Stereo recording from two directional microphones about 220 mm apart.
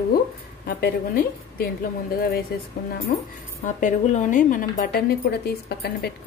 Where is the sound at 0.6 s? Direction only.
45° left (ahead or behind).